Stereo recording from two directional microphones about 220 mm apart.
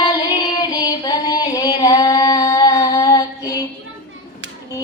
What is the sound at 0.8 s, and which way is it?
Singing, 15° left (ahead or behind).